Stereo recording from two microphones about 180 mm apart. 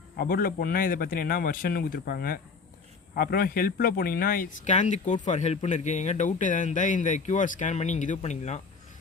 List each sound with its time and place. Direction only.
0.2 s speech: 55° left (ahead or behind)